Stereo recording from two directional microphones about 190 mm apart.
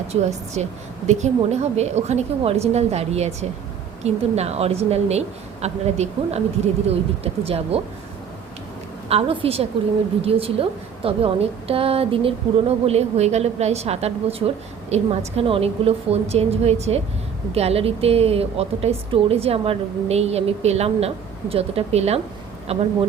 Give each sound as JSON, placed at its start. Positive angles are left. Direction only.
{"t": 0.1, "sound": "a woman's voice", "side_deg": -35}
{"t": 7.4, "sound": "a woman's voice", "side_deg": -30}
{"t": 9.0, "sound": "a woman's voice", "side_deg": -30}